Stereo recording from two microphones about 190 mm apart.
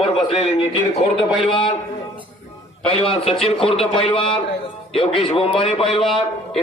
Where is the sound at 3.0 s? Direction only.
30° left (ahead or behind).